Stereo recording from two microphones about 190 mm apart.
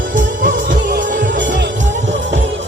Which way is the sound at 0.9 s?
45° right (ahead or behind).